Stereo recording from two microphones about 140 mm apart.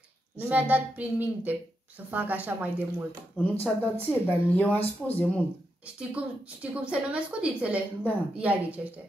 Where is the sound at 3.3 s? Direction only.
15° left (ahead or behind).